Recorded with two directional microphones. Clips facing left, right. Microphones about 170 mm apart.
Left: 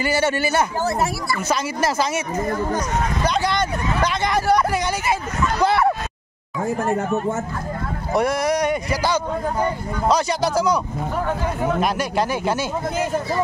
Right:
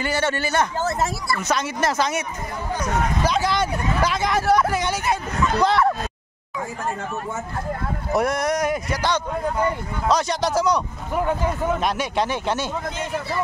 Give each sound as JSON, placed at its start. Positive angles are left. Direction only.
{"t": 0.0, "sound": "a man's voice", "side_deg": 5}
{"t": 3.3, "sound": "speech", "side_deg": -5}
{"t": 5.6, "sound": "a sound", "side_deg": 10}
{"t": 6.8, "sound": "speech", "side_deg": 40}
{"t": 8.1, "sound": "speech", "side_deg": 0}